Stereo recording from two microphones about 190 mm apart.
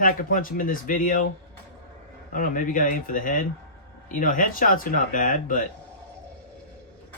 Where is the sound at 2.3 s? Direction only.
45° left (ahead or behind).